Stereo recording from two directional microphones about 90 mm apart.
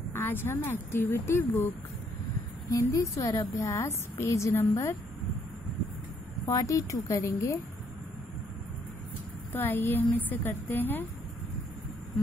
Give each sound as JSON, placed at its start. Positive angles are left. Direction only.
{"t": 0.1, "sound": "a woman's voice", "side_deg": 25}
{"t": 2.9, "sound": "a woman's voice", "side_deg": 40}
{"t": 6.4, "sound": "a woman's voice", "side_deg": 40}
{"t": 9.5, "sound": "a woman's voice", "side_deg": 25}